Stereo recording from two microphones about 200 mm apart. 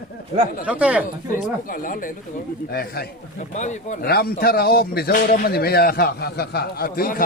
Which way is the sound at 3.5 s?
35° left (ahead or behind).